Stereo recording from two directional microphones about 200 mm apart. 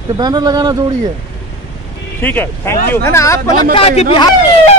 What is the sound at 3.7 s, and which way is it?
Speech, 30° left (ahead or behind).